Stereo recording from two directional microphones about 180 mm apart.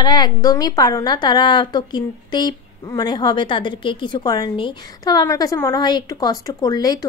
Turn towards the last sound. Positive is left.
turn(degrees=20)  # may be behind; listen again after turning